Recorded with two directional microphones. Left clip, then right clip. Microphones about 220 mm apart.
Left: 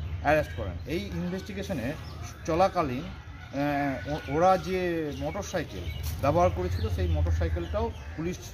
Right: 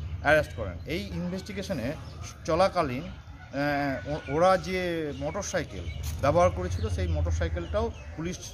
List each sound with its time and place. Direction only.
0.2 s speech: 20° right (ahead or behind)